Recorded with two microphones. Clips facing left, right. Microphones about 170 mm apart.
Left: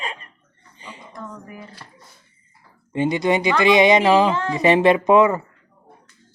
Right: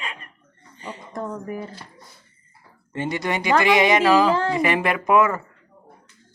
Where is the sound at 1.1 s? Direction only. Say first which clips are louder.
Right 8 dB; 40° right (ahead or behind).